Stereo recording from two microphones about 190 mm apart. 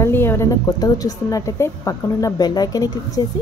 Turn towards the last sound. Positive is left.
turn(degrees=20)  # may be behind; listen again after turning